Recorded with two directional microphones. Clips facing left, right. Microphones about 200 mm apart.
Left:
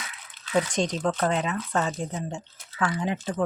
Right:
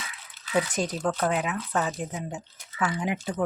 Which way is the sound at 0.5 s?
5° right (ahead or behind).